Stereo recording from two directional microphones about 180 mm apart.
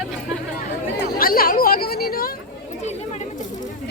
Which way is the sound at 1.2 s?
55° left (ahead or behind).